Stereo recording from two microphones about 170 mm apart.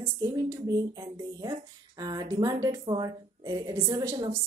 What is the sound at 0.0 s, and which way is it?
A woman's voice, 20° right (ahead or behind).